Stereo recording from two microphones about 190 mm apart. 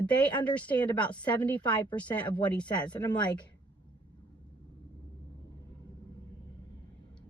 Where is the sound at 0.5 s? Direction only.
10° left (ahead or behind).